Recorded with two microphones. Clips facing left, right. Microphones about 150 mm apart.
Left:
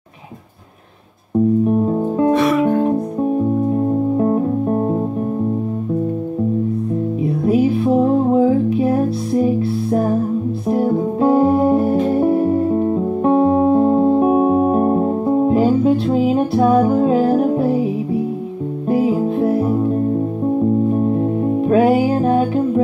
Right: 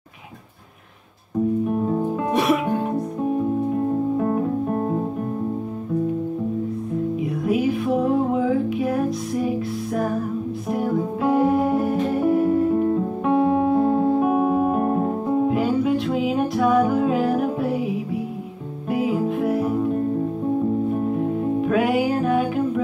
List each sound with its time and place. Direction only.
1.7 s music: 30° left (ahead or behind)
4.2 s music: 20° left (ahead or behind)
7.2 s music: 35° left (ahead or behind)
10.7 s music: 35° left (ahead or behind)
18.9 s music: 35° left (ahead or behind)
21.6 s music: 35° left (ahead or behind)